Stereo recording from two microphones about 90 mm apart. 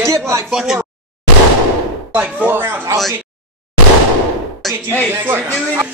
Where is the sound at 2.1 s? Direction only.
15° right (ahead or behind).